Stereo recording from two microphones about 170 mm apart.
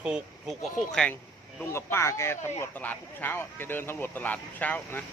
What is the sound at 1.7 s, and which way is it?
Speech, 15° left (ahead or behind).